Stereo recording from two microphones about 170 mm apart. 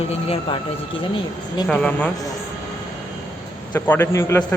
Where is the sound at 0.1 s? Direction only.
35° left (ahead or behind).